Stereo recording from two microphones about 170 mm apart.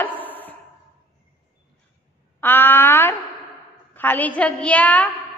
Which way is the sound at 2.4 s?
10° left (ahead or behind).